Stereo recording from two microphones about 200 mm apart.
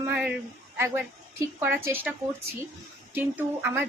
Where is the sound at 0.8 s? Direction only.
15° right (ahead or behind).